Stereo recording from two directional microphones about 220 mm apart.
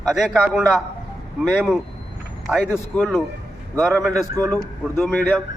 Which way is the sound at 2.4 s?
Centre (ahead or behind).